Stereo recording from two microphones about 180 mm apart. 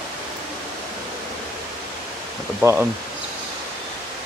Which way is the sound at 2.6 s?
10° right (ahead or behind).